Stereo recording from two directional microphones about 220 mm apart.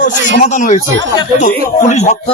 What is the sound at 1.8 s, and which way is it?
Speech, 30° left (ahead or behind).